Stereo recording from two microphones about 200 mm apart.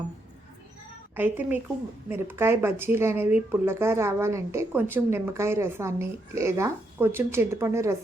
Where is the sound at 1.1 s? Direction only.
10° right (ahead or behind).